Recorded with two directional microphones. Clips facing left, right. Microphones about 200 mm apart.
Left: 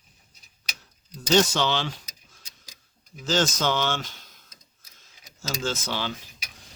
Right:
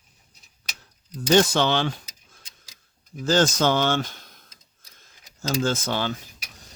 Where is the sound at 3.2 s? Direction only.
55° right (ahead or behind).